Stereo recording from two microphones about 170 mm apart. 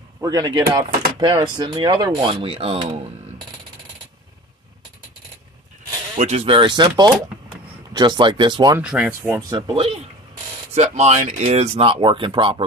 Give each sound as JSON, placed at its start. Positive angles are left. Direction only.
{"t": 0.2, "sound": "speech", "side_deg": -20}
{"t": 6.1, "sound": "speech", "side_deg": -40}
{"t": 8.7, "sound": "speech", "side_deg": -5}
{"t": 9.5, "sound": "speech", "side_deg": -30}
{"t": 10.7, "sound": "speech", "side_deg": -40}